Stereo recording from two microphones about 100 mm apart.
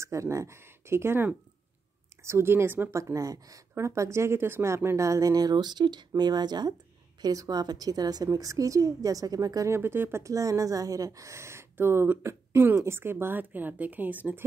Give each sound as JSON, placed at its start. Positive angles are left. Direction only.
{"t": 0.0, "sound": "speech", "side_deg": -30}
{"t": 3.0, "sound": "speech", "side_deg": -35}
{"t": 9.8, "sound": "speech", "side_deg": -25}